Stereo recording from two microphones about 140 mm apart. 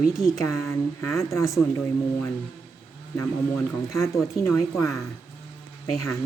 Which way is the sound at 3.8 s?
25° left (ahead or behind).